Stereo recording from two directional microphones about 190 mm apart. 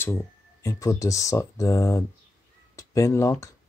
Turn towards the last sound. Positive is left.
turn(degrees=15)  # may be behind; listen again after turning